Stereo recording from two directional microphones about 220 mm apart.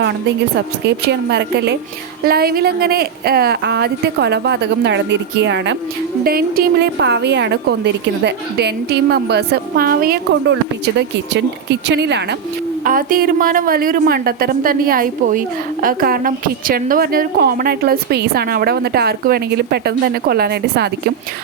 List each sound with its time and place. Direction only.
0.9 s a woman's voice: 50° right (ahead or behind)
6.2 s a woman's voice: 45° right (ahead or behind)
12.8 s a woman's voice: 40° right (ahead or behind)